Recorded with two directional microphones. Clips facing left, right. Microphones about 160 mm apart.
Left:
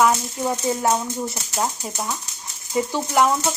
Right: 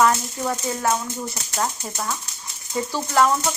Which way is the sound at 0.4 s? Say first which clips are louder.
Left 2 dB; 20° left (ahead or behind).